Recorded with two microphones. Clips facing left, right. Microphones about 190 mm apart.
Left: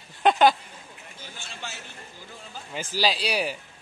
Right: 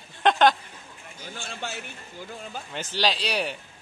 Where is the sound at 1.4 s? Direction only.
55° right (ahead or behind).